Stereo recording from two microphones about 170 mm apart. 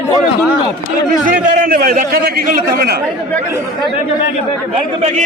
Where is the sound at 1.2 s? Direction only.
50° right (ahead or behind).